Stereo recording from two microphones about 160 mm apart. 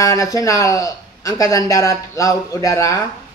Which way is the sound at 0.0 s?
20° left (ahead or behind).